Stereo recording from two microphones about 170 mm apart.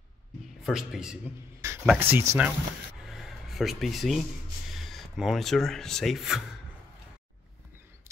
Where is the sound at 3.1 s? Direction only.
Centre (ahead or behind).